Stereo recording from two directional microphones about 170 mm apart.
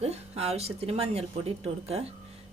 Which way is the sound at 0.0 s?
35° right (ahead or behind).